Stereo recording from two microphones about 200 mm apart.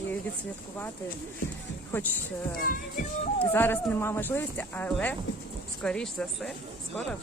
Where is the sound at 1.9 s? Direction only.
10° left (ahead or behind).